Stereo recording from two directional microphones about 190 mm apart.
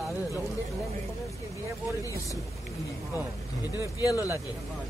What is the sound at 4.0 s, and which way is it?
Speech, 20° left (ahead or behind).